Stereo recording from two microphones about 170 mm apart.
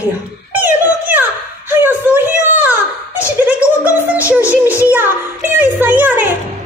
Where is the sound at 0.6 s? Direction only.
10° right (ahead or behind).